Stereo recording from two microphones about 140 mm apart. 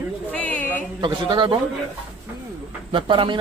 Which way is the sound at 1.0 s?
35° right (ahead or behind).